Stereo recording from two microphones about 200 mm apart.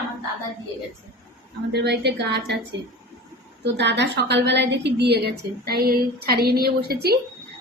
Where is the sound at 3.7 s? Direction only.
60° right (ahead or behind).